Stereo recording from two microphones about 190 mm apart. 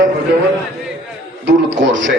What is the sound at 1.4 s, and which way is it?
Speech, 70° right (ahead or behind).